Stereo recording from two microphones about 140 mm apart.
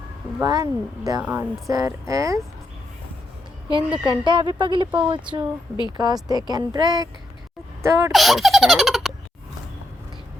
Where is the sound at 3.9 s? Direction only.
35° right (ahead or behind).